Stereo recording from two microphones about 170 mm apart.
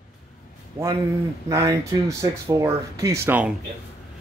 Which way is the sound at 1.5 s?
20° right (ahead or behind).